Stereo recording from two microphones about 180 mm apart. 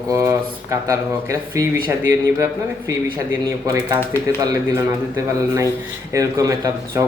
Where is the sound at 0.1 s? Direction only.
15° right (ahead or behind).